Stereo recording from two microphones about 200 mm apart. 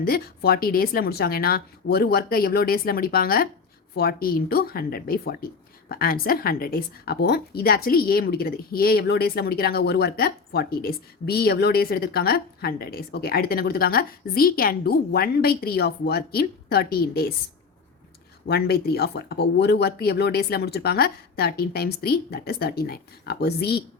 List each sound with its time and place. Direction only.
0.0 s a woman's voice: 50° left (ahead or behind)
18.4 s a woman's voice: 50° left (ahead or behind)